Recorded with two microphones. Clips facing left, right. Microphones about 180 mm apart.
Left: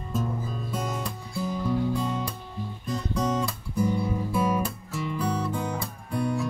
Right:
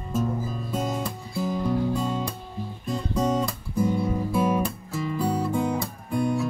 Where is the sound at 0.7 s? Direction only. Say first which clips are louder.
Right 4 dB; 25° right (ahead or behind).